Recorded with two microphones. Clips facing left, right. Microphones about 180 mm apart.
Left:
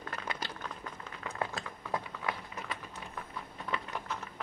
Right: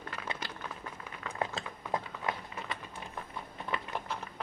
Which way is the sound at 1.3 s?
20° right (ahead or behind).